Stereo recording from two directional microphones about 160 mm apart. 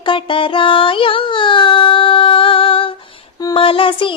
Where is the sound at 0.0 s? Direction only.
30° left (ahead or behind).